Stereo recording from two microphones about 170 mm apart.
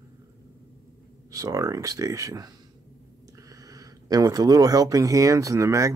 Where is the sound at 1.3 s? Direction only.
20° right (ahead or behind).